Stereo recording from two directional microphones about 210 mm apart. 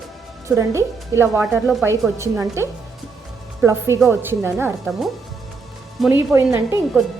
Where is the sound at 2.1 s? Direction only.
15° right (ahead or behind).